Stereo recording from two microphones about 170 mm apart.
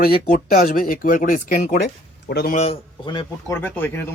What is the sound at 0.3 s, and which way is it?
Speech, 55° left (ahead or behind).